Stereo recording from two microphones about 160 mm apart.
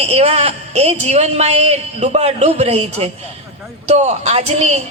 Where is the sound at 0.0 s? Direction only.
40° right (ahead or behind).